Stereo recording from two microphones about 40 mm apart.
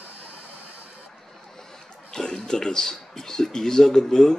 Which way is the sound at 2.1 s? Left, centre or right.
Centre.